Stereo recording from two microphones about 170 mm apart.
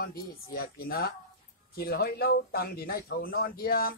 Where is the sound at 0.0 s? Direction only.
60° left (ahead or behind).